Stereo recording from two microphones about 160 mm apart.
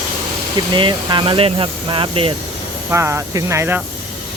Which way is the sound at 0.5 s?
30° right (ahead or behind).